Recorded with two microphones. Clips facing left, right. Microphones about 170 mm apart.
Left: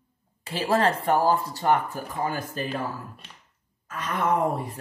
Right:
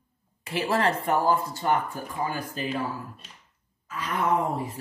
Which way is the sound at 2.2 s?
45° left (ahead or behind).